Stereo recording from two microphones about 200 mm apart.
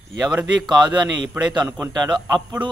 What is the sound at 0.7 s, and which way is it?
Speech, 20° right (ahead or behind).